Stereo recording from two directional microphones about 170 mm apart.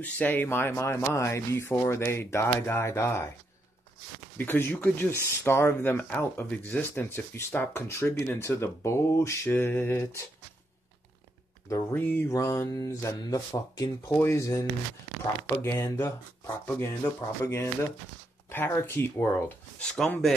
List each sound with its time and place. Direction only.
0.0 s speech: 10° left (ahead or behind)
4.4 s speech: 15° left (ahead or behind)
11.7 s speech: 15° left (ahead or behind)